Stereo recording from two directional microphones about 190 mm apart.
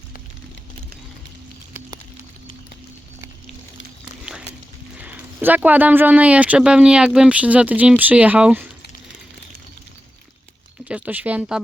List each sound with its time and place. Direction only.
4.9 s speech: 10° right (ahead or behind)
10.8 s speech: 5° right (ahead or behind)